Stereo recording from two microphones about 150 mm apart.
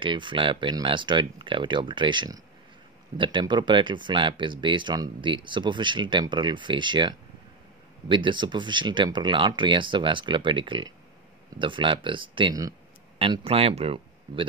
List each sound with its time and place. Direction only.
0.0 s speech: 35° right (ahead or behind)